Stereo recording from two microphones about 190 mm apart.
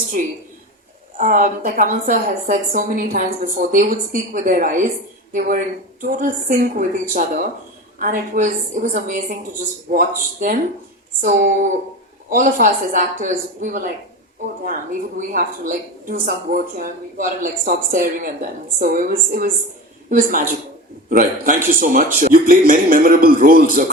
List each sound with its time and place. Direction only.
0.1 s a woman's voice: 45° right (ahead or behind)
11.2 s a woman's voice: 45° right (ahead or behind)